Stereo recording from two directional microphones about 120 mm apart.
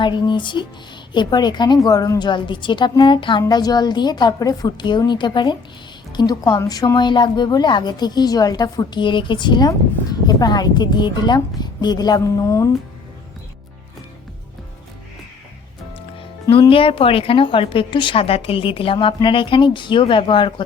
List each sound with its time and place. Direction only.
0.0 s a woman's voice: 40° left (ahead or behind)
16.5 s a woman's voice: 45° left (ahead or behind)